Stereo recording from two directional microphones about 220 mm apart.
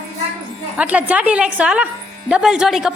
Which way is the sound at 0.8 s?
5° right (ahead or behind).